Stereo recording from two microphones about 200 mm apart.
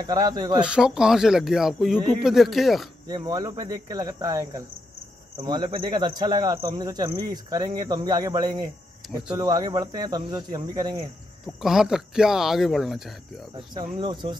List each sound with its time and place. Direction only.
0.0 s speech: 20° right (ahead or behind)
0.6 s speech: 5° right (ahead or behind)
3.1 s speech: 20° right (ahead or behind)
9.0 s a sound: centre (ahead or behind)
9.4 s speech: 20° right (ahead or behind)
11.4 s speech: centre (ahead or behind)
13.9 s speech: 25° right (ahead or behind)